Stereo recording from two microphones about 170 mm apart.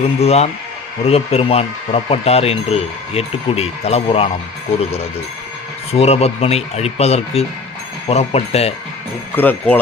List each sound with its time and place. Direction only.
0.2 s speech: 40° left (ahead or behind)
5.9 s speech: 35° left (ahead or behind)
9.3 s speech: 10° left (ahead or behind)